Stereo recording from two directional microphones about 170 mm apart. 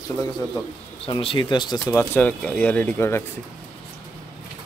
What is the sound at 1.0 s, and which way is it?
Speech, 30° left (ahead or behind).